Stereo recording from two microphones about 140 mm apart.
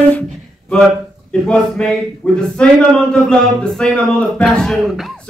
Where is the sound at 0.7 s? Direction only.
5° left (ahead or behind).